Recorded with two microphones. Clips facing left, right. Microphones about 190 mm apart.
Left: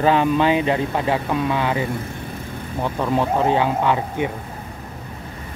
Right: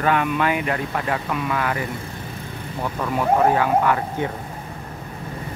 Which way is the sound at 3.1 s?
20° left (ahead or behind).